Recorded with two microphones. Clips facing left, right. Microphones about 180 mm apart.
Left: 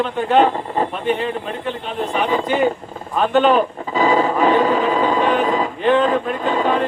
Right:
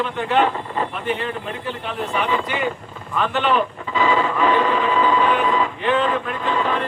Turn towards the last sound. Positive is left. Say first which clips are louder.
# left 4 dB
turn(degrees=40)  # may be behind; listen again after turning